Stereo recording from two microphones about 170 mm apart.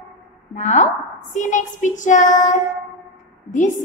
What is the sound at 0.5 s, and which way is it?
A woman's voice, 45° left (ahead or behind).